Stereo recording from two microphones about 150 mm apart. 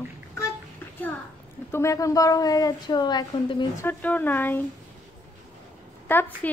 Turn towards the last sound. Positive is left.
turn(degrees=10)  # may be behind; listen again after turning